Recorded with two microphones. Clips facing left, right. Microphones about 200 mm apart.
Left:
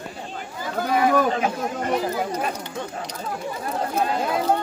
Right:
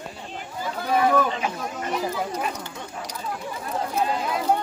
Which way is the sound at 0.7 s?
45° left (ahead or behind).